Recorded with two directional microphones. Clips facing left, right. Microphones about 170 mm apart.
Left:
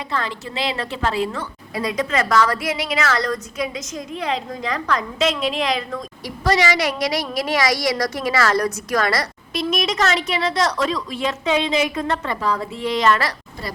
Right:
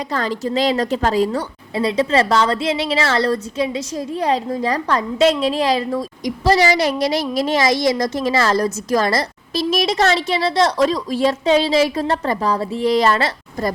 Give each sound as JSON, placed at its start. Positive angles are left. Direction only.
{"t": 0.1, "sound": "a woman's voice", "side_deg": -40}